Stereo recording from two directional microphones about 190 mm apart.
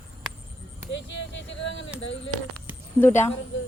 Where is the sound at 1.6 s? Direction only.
70° left (ahead or behind).